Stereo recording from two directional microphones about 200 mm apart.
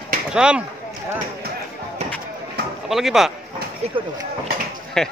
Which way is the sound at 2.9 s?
Centre (ahead or behind).